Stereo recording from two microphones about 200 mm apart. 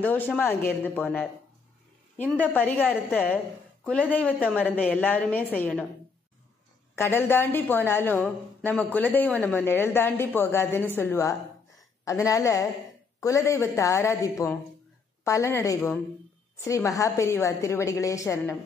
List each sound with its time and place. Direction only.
0.0 s a woman's voice: 10° left (ahead or behind)
2.3 s a woman's voice: 10° left (ahead or behind)
7.0 s a woman's voice: 10° left (ahead or behind)